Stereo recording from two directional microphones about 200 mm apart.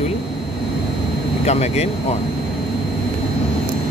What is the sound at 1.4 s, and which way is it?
Speech, 35° left (ahead or behind).